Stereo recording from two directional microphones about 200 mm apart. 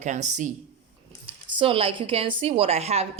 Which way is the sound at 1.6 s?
25° right (ahead or behind).